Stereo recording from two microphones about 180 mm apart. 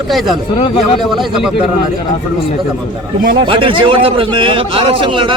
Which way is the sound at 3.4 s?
30° right (ahead or behind).